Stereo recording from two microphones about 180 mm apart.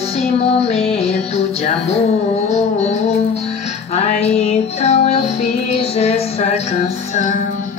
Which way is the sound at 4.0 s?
35° left (ahead or behind).